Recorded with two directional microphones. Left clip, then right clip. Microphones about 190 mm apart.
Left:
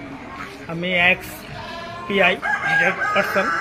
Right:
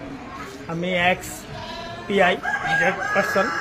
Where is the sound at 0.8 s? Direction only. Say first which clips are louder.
Left 3 dB; 15° right (ahead or behind).